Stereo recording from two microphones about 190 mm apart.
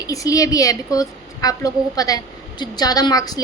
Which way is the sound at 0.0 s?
20° left (ahead or behind).